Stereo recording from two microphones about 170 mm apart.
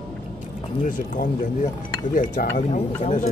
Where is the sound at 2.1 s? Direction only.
50° left (ahead or behind).